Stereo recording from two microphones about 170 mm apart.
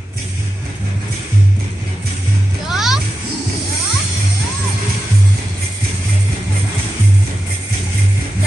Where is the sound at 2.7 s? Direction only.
Centre (ahead or behind).